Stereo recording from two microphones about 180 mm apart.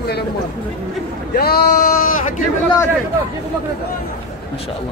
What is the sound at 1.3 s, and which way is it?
Speech, 60° left (ahead or behind).